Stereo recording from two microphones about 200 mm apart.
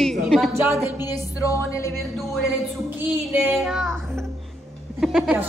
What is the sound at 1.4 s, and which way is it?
Music, 15° left (ahead or behind).